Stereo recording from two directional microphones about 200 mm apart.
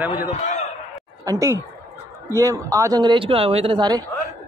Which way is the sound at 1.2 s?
15° right (ahead or behind).